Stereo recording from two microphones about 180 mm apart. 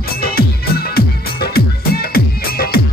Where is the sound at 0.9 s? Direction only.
60° left (ahead or behind).